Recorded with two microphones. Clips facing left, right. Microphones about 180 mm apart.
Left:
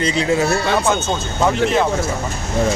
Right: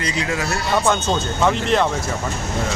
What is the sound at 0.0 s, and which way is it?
Speech, 25° left (ahead or behind).